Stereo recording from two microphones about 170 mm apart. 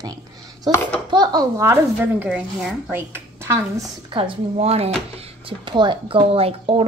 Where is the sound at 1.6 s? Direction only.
10° right (ahead or behind).